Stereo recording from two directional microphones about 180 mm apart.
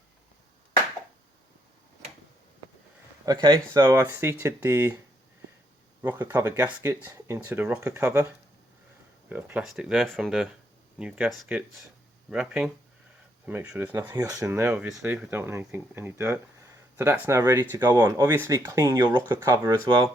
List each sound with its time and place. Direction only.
3.2 s speech: 25° right (ahead or behind)
6.0 s speech: 10° right (ahead or behind)
9.3 s speech: 10° right (ahead or behind); by 20.1 s 25° right (ahead or behind)